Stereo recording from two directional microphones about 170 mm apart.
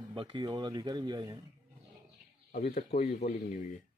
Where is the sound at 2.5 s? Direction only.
55° left (ahead or behind).